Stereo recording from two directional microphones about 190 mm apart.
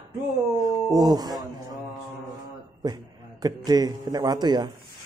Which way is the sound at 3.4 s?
20° right (ahead or behind).